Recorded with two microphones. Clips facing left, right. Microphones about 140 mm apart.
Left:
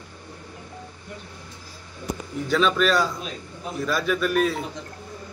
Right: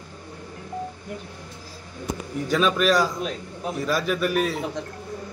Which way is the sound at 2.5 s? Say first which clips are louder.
Even; 10° right (ahead or behind).